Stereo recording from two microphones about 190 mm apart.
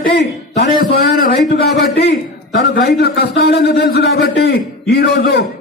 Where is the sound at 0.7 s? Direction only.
55° left (ahead or behind).